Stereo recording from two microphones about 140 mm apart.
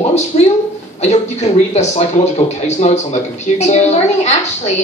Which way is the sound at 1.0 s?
55° left (ahead or behind).